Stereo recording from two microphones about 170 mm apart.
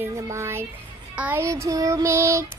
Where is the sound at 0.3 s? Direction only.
15° right (ahead or behind).